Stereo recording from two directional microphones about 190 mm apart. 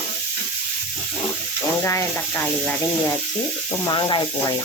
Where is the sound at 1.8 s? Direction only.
15° left (ahead or behind).